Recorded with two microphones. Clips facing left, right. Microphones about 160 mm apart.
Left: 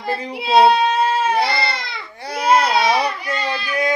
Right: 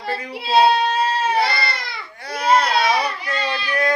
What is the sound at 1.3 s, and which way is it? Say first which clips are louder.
Baby cry: left 1 dB; 20° left (ahead or behind).